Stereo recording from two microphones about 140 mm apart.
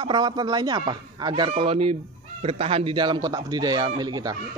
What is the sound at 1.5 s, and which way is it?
Fowl, 45° right (ahead or behind).